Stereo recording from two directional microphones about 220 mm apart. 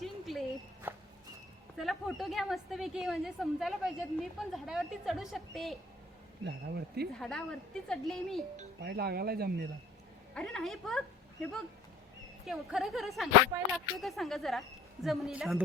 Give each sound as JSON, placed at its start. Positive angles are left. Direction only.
{"t": 0.0, "sound": "a sound", "side_deg": 0}
{"t": 0.9, "sound": "walk", "side_deg": -10}
{"t": 1.8, "sound": "a woman's voice", "side_deg": 0}
{"t": 6.4, "sound": "speech", "side_deg": -45}
{"t": 7.2, "sound": "a woman's voice", "side_deg": 0}
{"t": 8.8, "sound": "speech", "side_deg": -45}
{"t": 10.3, "sound": "a woman's voice", "side_deg": 5}
{"t": 12.5, "sound": "a woman's voice", "side_deg": 0}